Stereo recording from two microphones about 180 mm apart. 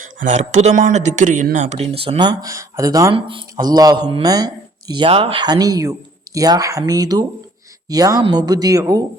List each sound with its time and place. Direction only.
0.0 s speech: 45° right (ahead or behind); by 9.0 s 20° right (ahead or behind)